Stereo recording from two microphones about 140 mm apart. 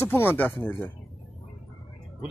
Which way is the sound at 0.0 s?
15° left (ahead or behind).